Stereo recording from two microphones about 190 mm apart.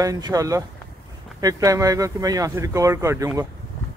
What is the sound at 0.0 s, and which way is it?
Speech, 20° right (ahead or behind).